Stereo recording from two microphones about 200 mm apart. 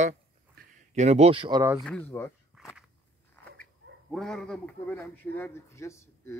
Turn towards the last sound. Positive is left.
turn(degrees=15)  # may be behind; listen again after turning